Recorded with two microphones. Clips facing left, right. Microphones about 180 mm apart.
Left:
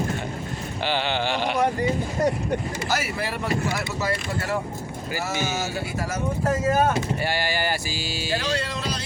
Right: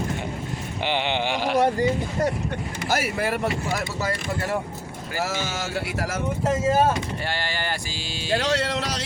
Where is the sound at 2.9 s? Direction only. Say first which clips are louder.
Right 5 dB; 50° right (ahead or behind).